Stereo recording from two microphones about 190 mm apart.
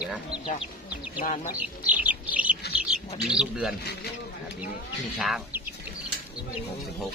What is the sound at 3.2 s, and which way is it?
Speech, 5° right (ahead or behind).